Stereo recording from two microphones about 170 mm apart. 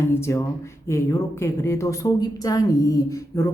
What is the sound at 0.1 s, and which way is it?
A woman's voice, 15° left (ahead or behind).